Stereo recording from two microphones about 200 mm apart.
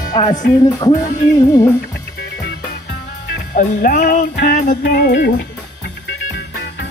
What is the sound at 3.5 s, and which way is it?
Music, 40° left (ahead or behind).